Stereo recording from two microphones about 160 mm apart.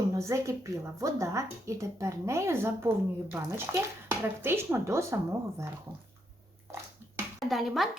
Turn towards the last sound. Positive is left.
turn(degrees=0)  # may be behind; listen again after turning